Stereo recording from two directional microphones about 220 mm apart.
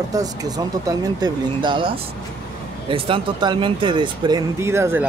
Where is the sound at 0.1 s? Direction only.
15° right (ahead or behind).